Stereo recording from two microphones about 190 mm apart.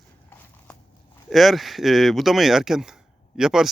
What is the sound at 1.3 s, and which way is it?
Speech, centre (ahead or behind).